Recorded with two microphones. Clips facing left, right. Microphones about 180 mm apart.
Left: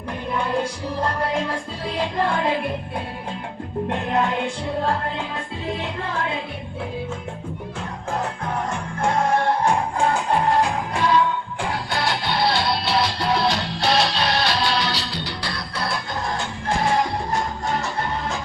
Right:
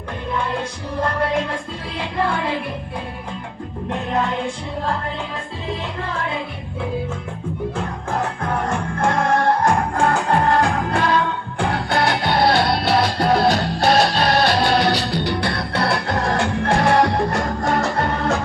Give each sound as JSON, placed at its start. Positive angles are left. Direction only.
{"t": 9.6, "sound": "music", "side_deg": -60}